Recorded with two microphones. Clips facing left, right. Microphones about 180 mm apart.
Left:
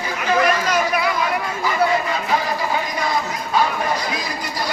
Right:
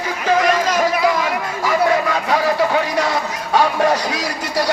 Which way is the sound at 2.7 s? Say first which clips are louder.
Right 4 dB; 75° right (ahead or behind).